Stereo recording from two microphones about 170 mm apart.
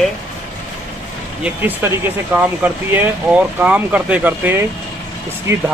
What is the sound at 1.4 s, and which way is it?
Speech, 10° right (ahead or behind).